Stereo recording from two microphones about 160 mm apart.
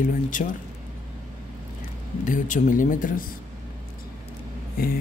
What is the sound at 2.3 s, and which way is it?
Speech, 55° left (ahead or behind).